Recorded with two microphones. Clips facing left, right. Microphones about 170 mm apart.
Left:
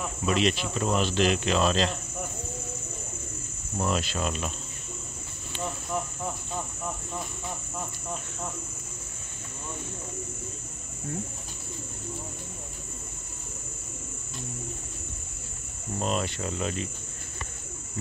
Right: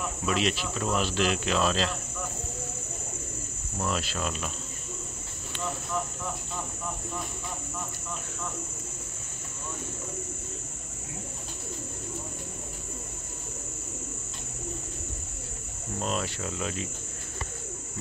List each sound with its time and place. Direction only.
0.3 s speech: 5° right (ahead or behind)
3.7 s cricket: 10° left (ahead or behind)
4.0 s speech: centre (ahead or behind)
16.0 s speech: centre (ahead or behind)